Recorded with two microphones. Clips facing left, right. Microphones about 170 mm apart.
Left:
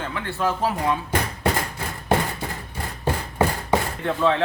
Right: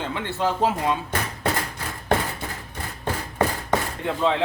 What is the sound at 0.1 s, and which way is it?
Speech, 25° right (ahead or behind).